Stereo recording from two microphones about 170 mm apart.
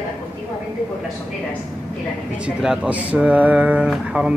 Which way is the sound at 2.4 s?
5° right (ahead or behind).